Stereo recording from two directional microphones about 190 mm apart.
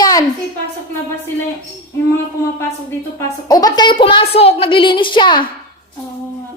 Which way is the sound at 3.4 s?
20° left (ahead or behind).